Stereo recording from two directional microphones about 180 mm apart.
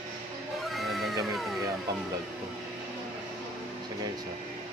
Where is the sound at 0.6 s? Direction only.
Centre (ahead or behind).